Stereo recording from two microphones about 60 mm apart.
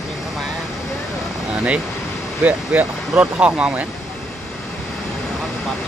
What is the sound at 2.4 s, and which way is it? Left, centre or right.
Speech, right.